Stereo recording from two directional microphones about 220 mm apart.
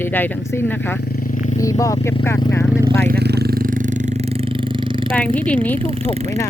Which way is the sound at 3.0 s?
45° right (ahead or behind).